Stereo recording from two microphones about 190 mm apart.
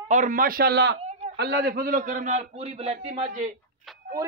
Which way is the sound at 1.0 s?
35° right (ahead or behind).